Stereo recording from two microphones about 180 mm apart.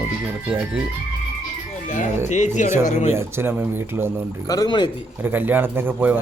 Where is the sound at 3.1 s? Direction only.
15° right (ahead or behind).